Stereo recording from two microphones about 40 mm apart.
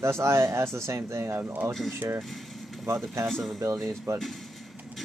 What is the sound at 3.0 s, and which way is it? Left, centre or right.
Speech, centre.